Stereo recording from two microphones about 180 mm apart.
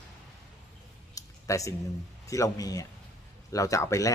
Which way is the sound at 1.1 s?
15° left (ahead or behind).